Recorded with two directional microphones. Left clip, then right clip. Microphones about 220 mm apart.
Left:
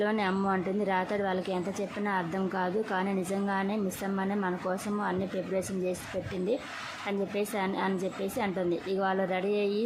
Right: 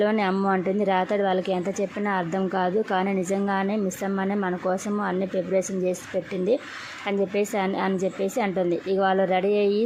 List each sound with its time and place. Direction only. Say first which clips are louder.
0.0 s a woman's voice: right 6 dB; 20° right (ahead or behind)
7.1 s a woman's voice: right 8 dB; 20° right (ahead or behind)